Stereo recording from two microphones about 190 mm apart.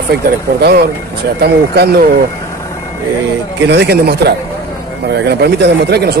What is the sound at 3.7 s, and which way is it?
Speech, 65° right (ahead or behind).